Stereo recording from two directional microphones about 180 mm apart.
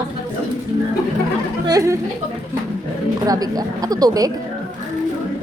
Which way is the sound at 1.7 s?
15° right (ahead or behind).